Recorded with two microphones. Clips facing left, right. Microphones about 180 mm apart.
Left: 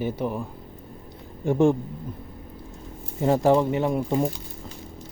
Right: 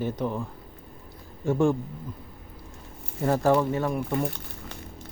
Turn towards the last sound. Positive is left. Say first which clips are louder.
# left 3 dB
turn(degrees=25)  # may be behind; listen again after turning